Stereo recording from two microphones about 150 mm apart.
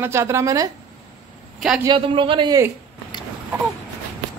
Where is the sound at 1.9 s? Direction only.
35° right (ahead or behind).